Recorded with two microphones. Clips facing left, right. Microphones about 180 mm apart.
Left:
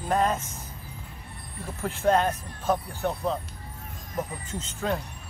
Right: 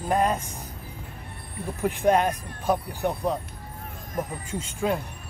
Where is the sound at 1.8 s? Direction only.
15° right (ahead or behind).